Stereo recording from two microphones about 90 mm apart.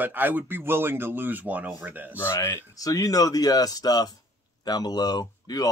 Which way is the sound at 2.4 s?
40° left (ahead or behind).